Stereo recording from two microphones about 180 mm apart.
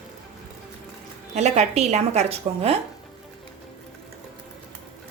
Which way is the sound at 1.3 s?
40° right (ahead or behind).